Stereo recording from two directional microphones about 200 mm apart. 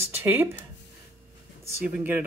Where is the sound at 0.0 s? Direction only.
10° right (ahead or behind).